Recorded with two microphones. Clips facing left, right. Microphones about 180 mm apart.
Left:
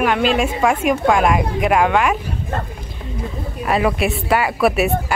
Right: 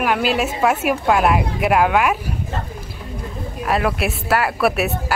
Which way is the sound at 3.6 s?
Centre (ahead or behind).